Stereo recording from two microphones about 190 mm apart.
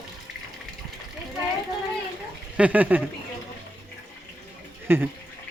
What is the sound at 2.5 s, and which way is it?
Speech, 5° right (ahead or behind).